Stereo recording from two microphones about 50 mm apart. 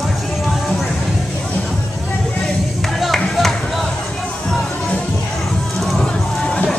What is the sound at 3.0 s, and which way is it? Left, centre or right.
Music, centre.